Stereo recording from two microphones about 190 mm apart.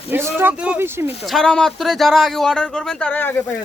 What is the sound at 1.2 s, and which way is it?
Speech, centre (ahead or behind).